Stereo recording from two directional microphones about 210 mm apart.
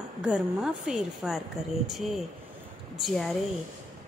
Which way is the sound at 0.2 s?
5° right (ahead or behind).